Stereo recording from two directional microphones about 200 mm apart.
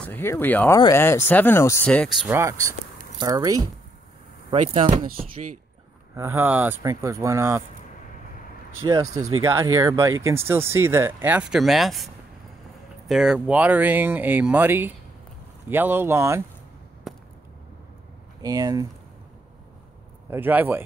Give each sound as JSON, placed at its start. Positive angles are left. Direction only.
{"t": 0.0, "sound": "speech", "side_deg": 10}
{"t": 2.2, "sound": "speech", "side_deg": -10}
{"t": 6.1, "sound": "speech", "side_deg": -15}
{"t": 8.8, "sound": "speech", "side_deg": -15}
{"t": 13.1, "sound": "speech", "side_deg": 0}
{"t": 17.1, "sound": "chop", "side_deg": 0}
{"t": 18.4, "sound": "speech", "side_deg": -20}
{"t": 20.2, "sound": "speech", "side_deg": -10}